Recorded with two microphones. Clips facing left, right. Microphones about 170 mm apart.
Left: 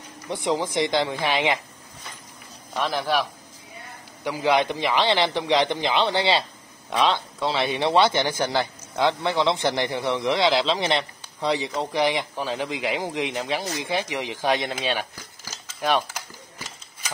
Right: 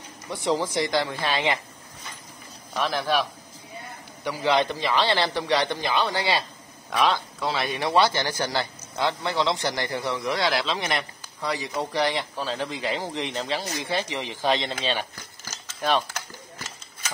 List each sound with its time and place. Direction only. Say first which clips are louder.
0.3 s speech: even; 20° left (ahead or behind)
2.8 s speech: left 1 dB; 15° left (ahead or behind)